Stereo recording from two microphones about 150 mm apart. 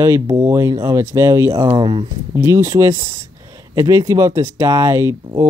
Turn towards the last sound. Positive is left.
turn(degrees=-15)  # may be behind; listen again after turning